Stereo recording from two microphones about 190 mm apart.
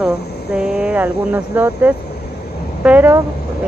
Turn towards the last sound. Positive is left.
turn(degrees=-10)  # may be behind; listen again after turning